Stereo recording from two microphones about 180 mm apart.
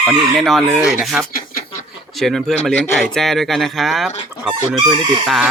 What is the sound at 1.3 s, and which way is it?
Bird, 50° left (ahead or behind).